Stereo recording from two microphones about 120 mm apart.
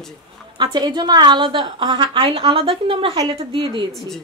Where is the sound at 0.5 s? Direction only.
40° right (ahead or behind).